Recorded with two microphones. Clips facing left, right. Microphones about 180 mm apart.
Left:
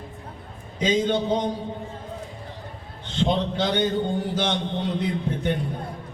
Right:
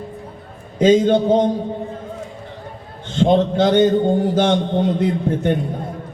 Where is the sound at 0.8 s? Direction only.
50° right (ahead or behind).